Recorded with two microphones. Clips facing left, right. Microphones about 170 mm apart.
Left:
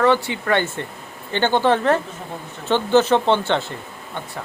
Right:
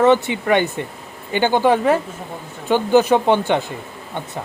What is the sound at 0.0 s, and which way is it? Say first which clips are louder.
Speech: right 3 dB; 20° right (ahead or behind).